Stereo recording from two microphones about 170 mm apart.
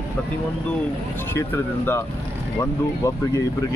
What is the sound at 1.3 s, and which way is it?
Speech, 15° left (ahead or behind).